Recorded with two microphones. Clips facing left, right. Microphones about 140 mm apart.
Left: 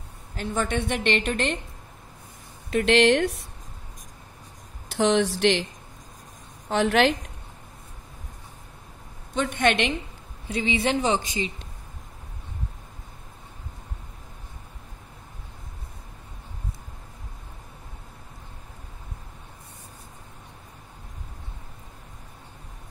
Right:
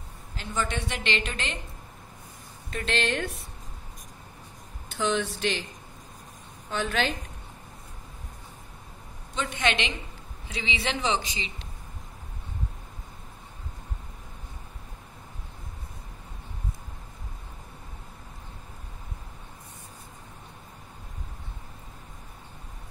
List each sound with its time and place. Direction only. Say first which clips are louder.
0.4 s a woman's voice: left 5 dB; 55° left (ahead or behind)
2.7 s a woman's voice: left 10 dB; 70° left (ahead or behind)
4.8 s speech: left 6 dB; 80° left
6.7 s a woman's voice: left 8 dB; 80° left
9.3 s speech: left 5 dB; 50° left (ahead or behind)